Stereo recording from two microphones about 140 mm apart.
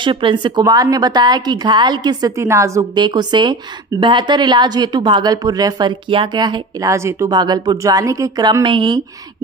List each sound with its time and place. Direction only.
0.0 s a woman's voice: 35° right (ahead or behind)